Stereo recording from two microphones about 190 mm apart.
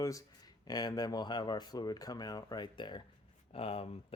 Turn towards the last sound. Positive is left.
turn(degrees=30)  # may be behind; listen again after turning